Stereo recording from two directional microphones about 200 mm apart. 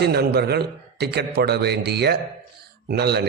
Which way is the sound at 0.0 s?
55° right (ahead or behind).